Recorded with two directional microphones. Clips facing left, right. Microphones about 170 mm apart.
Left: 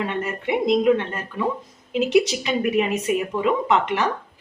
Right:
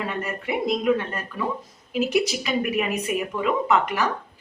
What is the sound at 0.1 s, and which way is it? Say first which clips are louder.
Speech: left 3 dB; 20° left (ahead or behind).